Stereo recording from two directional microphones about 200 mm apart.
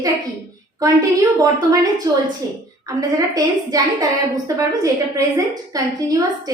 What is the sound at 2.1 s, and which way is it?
A woman's voice, 15° right (ahead or behind).